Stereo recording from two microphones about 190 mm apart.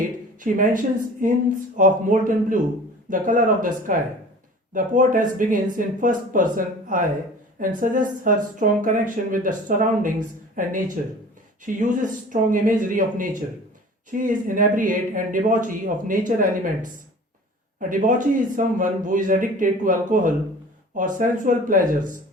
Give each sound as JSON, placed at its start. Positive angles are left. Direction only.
{"t": 0.3, "sound": "speech", "side_deg": -45}